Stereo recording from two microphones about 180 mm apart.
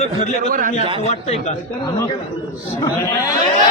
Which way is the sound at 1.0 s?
35° left (ahead or behind).